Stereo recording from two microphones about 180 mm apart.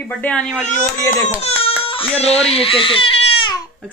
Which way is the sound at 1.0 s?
15° left (ahead or behind).